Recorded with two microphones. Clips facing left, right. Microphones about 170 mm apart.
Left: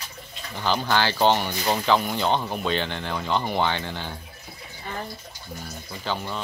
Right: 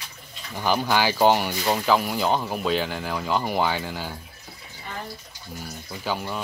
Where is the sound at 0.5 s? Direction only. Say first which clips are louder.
Right 1 dB; 10° right (ahead or behind).